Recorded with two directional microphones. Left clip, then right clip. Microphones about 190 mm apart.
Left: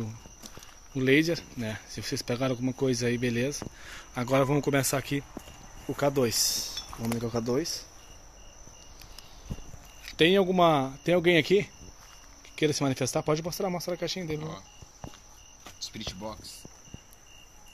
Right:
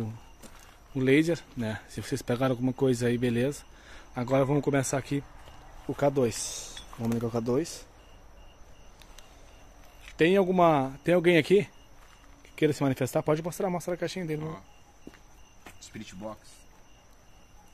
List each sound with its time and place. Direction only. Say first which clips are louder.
0.9 s speech: even; 10° right (ahead or behind)
3.9 s speech: even; 5° right (ahead or behind)
7.2 s speech: right 1 dB; 15° right (ahead or behind)
10.1 s speech: even; centre (ahead or behind); by 14.4 s 20° right (ahead or behind)
15.9 s speech: even; 5° left (ahead or behind)